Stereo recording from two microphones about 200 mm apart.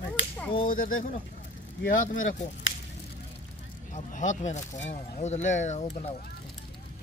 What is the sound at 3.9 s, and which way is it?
Speech, 40° left (ahead or behind).